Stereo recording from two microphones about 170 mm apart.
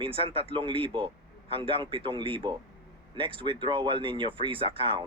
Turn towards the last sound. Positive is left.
turn(degrees=-30)  # may be behind; listen again after turning